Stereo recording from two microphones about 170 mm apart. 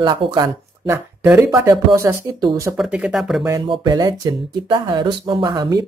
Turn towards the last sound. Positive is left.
turn(degrees=-25)  # may be behind; listen again after turning